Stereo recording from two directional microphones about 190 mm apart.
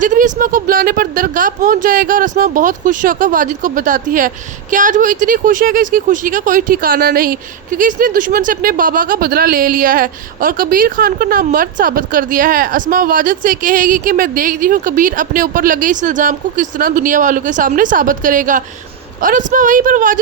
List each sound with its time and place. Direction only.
0.0 s speech: 40° right (ahead or behind)